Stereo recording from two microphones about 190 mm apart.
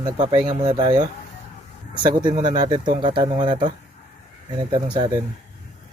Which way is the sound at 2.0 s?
25° right (ahead or behind).